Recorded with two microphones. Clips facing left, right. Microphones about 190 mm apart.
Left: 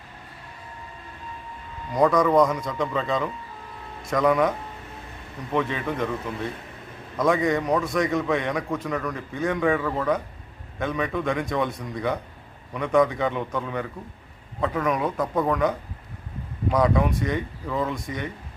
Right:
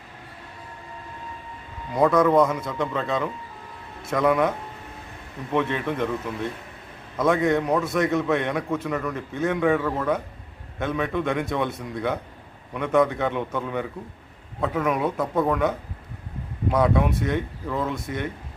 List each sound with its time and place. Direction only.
1.9 s a man's voice: 5° right (ahead or behind)
5.7 s a man's voice: centre (ahead or behind)
16.7 s a man's voice: 5° right (ahead or behind)